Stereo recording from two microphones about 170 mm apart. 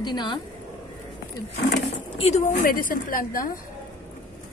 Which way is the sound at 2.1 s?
35° left (ahead or behind).